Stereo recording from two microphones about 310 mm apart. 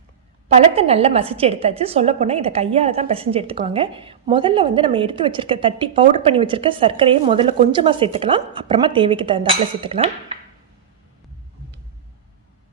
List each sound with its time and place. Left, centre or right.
0.4 s a woman's voice: centre